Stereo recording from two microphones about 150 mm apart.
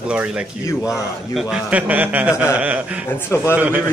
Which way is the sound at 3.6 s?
10° right (ahead or behind).